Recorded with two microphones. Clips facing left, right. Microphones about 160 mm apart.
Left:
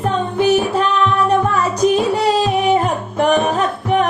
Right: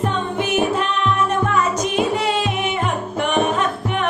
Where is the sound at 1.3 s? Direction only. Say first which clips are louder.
Left 3 dB; 35° left (ahead or behind).